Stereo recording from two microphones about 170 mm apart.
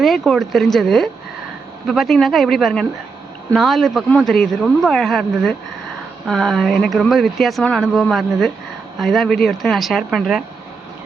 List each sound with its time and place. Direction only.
0.0 s speech: centre (ahead or behind)